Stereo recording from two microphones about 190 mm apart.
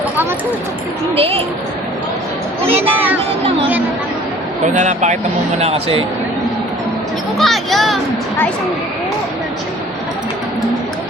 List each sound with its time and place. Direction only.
1.1 s speech: 30° right (ahead or behind)
4.6 s speech: 40° right (ahead or behind)
7.3 s a sound: centre (ahead or behind)